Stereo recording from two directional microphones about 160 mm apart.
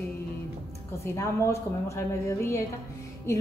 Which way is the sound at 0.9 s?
15° left (ahead or behind).